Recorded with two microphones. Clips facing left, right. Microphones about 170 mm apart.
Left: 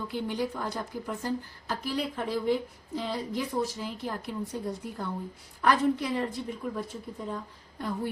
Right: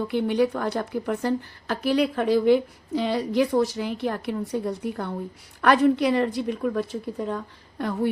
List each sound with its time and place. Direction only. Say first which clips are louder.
0.1 s a woman's voice: right 9 dB; 70° right (ahead or behind)